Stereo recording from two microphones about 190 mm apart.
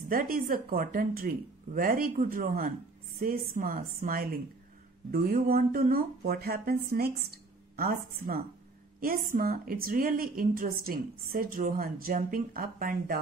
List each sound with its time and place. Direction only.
0.1 s a woman's voice: 45° right (ahead or behind)